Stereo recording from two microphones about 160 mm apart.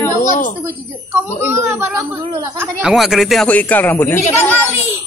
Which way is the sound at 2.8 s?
Centre (ahead or behind).